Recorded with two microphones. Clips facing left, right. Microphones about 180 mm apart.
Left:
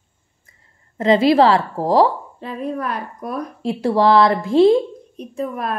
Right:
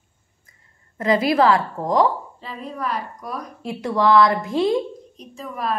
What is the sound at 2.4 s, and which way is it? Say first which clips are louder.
Speech: left 6 dB; 55° left (ahead or behind).